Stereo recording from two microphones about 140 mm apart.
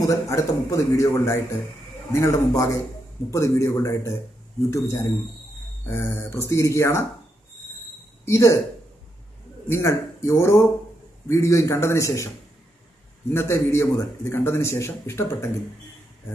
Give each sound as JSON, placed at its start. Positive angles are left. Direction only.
{"t": 0.0, "sound": "a man's voice", "side_deg": 20}
{"t": 8.3, "sound": "a man's voice", "side_deg": 20}
{"t": 9.7, "sound": "a man's voice", "side_deg": 20}
{"t": 13.3, "sound": "a man's voice", "side_deg": 20}